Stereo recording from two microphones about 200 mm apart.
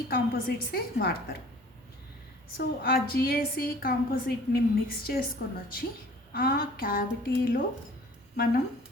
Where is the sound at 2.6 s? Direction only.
50° left (ahead or behind).